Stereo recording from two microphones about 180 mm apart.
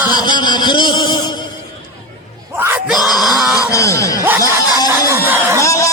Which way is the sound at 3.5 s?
15° left (ahead or behind).